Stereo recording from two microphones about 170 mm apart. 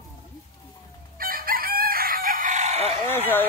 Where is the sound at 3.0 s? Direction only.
10° left (ahead or behind).